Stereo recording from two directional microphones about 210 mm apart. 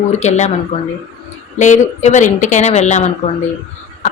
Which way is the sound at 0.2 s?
35° left (ahead or behind).